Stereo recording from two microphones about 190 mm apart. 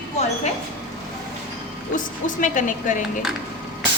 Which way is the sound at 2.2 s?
40° left (ahead or behind).